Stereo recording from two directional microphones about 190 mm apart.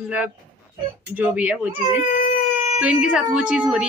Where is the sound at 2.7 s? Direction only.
5° right (ahead or behind).